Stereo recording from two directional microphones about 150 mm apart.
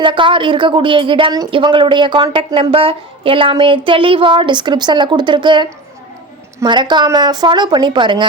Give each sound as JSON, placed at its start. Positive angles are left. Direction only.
{"t": 0.0, "sound": "a woman's voice", "side_deg": -35}